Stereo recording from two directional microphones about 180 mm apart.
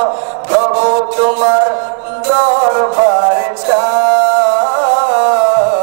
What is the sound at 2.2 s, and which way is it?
Music, 15° right (ahead or behind).